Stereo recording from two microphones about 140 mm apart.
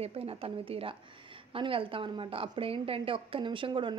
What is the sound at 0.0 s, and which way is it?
A woman's voice, 45° right (ahead or behind).